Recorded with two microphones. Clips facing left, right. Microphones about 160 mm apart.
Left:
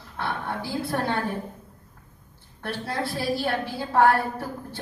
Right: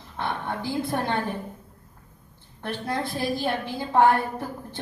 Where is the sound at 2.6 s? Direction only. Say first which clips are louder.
Right 1 dB; 20° right (ahead or behind).